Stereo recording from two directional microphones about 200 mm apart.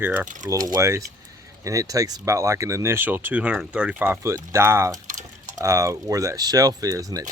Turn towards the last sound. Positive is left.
turn(degrees=-15)  # may be behind; listen again after turning